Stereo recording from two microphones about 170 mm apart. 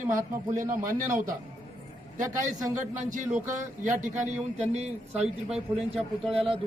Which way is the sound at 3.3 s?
50° right (ahead or behind).